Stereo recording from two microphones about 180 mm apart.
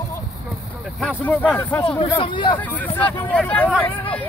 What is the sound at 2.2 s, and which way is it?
Speech, 25° left (ahead or behind).